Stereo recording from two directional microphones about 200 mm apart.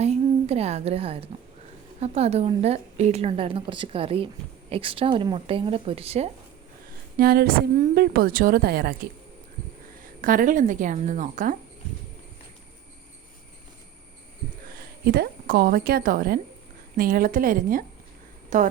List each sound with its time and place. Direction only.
0.0 s a woman's voice: 30° right (ahead or behind)
7.2 s a woman's voice: 50° right (ahead or behind)
10.2 s a woman's voice: 45° right (ahead or behind)
15.0 s a woman's voice: 50° right (ahead or behind)